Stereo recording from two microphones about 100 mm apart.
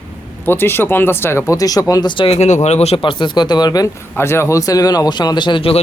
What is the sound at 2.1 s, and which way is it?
Speech, 75° left (ahead or behind).